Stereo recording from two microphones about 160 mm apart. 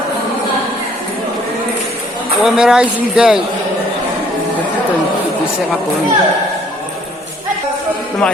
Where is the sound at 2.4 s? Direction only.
5° right (ahead or behind).